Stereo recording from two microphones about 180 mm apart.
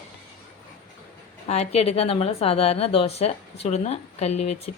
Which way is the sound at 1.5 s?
35° left (ahead or behind).